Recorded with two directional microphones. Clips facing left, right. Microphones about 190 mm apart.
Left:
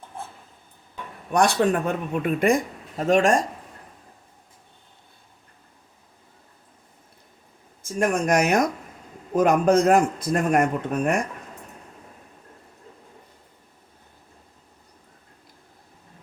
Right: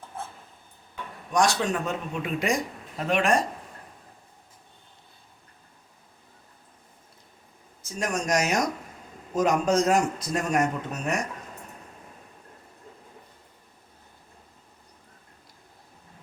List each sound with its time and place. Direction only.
1.3 s speech: 60° left (ahead or behind)
3.0 s speech: 45° left (ahead or behind)
7.9 s speech: 55° left (ahead or behind)